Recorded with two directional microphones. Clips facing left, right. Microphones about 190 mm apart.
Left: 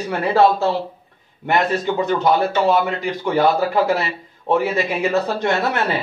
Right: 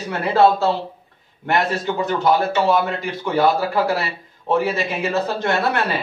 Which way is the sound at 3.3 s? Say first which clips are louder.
Left 1 dB; 20° left (ahead or behind).